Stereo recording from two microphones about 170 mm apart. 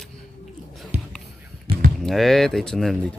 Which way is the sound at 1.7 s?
35° right (ahead or behind).